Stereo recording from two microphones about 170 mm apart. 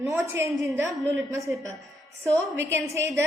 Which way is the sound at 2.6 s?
15° right (ahead or behind).